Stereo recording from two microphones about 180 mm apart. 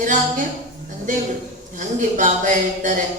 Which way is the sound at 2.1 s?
45° right (ahead or behind).